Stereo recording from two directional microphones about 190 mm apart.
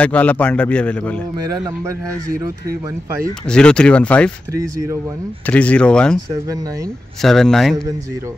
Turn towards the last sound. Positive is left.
turn(degrees=0)  # may be behind; listen again after turning